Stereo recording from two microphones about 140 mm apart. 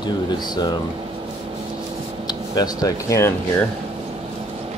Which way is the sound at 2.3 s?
30° left (ahead or behind).